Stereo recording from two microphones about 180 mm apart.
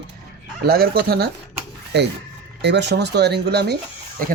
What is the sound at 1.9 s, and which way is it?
Speech, 70° right (ahead or behind).